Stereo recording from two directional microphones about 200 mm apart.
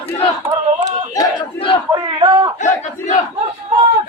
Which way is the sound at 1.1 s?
20° left (ahead or behind).